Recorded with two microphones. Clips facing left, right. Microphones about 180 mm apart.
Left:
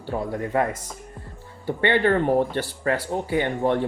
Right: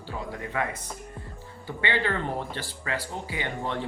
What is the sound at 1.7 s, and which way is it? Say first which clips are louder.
Speech: left 8 dB; 55° left (ahead or behind).